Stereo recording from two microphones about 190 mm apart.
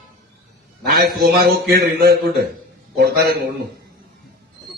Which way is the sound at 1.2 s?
55° right (ahead or behind).